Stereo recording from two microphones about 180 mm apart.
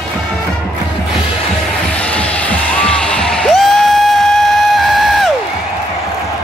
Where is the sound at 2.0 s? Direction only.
5° left (ahead or behind).